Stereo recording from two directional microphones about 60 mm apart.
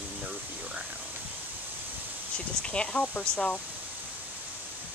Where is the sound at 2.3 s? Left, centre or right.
Centre.